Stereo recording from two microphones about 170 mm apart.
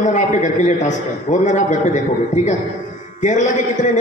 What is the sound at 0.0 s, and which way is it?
A woman's voice, 45° left (ahead or behind).